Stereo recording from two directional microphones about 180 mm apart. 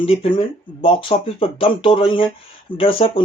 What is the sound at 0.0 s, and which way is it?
Speech, 30° left (ahead or behind).